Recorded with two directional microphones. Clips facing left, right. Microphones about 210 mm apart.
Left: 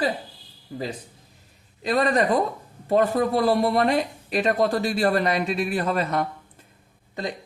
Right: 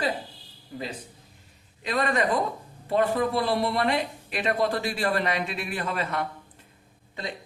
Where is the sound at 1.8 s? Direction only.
40° left (ahead or behind).